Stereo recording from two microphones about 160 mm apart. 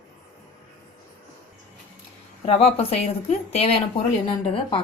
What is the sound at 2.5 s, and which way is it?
A woman's voice, 40° left (ahead or behind).